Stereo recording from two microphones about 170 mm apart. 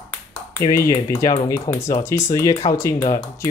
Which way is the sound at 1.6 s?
15° left (ahead or behind).